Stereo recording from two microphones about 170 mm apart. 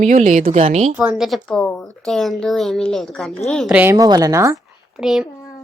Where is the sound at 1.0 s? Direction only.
5° right (ahead or behind).